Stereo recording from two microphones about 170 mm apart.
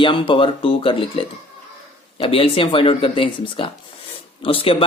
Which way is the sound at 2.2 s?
30° left (ahead or behind).